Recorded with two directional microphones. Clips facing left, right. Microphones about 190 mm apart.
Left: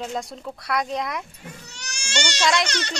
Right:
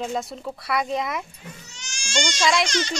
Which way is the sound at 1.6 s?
65° left (ahead or behind).